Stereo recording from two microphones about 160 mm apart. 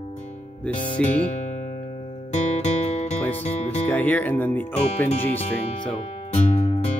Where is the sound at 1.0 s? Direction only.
45° left (ahead or behind).